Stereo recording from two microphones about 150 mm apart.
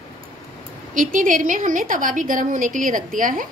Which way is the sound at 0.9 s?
60° right (ahead or behind).